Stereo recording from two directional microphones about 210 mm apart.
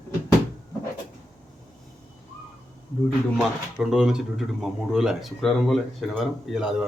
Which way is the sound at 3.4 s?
Centre (ahead or behind).